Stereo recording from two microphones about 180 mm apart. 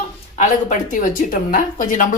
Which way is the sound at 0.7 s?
45° left (ahead or behind).